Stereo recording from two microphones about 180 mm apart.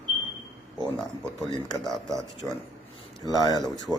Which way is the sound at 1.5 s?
20° left (ahead or behind).